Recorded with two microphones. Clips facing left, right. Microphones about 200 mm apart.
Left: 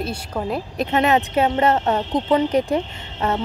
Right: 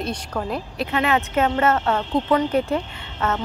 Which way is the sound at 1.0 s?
35° left (ahead or behind).